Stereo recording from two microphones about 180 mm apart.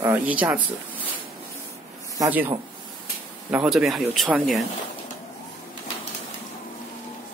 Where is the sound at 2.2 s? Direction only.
10° right (ahead or behind).